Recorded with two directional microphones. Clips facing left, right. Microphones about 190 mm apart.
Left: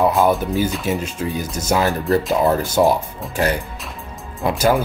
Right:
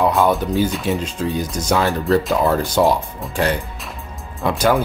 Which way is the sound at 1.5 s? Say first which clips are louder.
Right 1 dB; 25° left (ahead or behind).